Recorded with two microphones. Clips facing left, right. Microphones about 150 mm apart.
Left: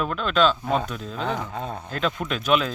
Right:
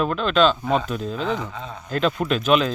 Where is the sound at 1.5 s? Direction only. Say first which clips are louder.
Left 4 dB; 50° left (ahead or behind).